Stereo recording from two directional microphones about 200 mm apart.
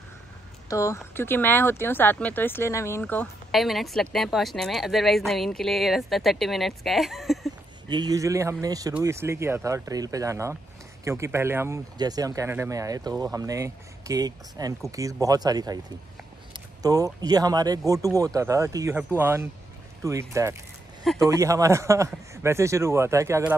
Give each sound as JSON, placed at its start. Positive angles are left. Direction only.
{"t": 0.7, "sound": "speech", "side_deg": 15}
{"t": 7.9, "sound": "speech", "side_deg": -20}